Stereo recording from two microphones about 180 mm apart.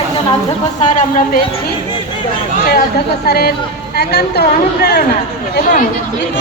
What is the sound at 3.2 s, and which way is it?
A woman's voice, 60° left (ahead or behind).